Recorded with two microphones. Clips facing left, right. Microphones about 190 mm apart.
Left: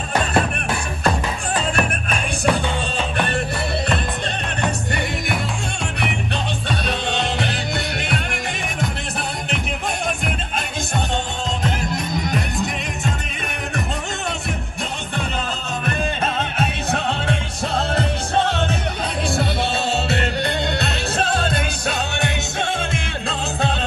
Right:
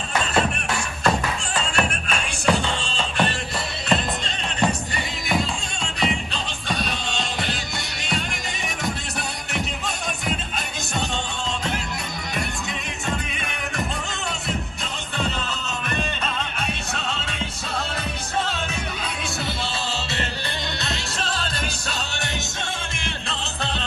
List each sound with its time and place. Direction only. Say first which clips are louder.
2.5 s music: left 2 dB; 55° left (ahead or behind)
15.8 s music: left 6 dB; 50° left (ahead or behind)